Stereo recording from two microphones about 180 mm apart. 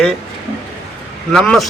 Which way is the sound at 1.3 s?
5° left (ahead or behind).